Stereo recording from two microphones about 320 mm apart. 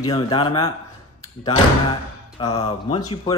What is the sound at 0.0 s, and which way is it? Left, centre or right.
Speech, centre.